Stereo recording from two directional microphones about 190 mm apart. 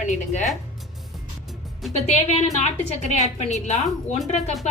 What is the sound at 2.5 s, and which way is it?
A woman's voice, 35° left (ahead or behind).